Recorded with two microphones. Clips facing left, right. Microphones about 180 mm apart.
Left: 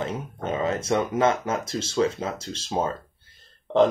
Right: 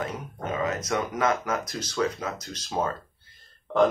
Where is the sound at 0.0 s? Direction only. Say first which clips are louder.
Left 3 dB; 25° left (ahead or behind).